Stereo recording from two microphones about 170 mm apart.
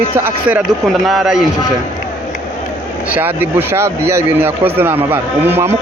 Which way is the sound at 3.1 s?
10° right (ahead or behind).